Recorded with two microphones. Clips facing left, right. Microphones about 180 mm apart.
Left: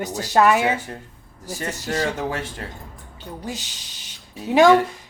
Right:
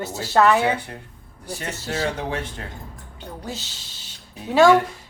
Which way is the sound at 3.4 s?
15° left (ahead or behind).